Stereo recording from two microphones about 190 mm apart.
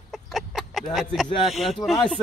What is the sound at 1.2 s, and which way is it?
Speech, 25° left (ahead or behind).